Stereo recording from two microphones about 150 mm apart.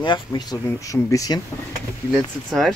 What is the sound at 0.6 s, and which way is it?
Speech, 20° left (ahead or behind).